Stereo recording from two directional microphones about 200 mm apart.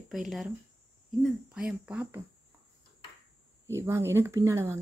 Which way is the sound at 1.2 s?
5° right (ahead or behind).